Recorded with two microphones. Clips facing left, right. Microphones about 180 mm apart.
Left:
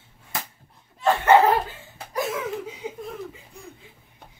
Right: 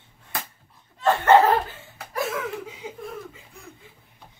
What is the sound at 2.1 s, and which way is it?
Laughter, 15° left (ahead or behind).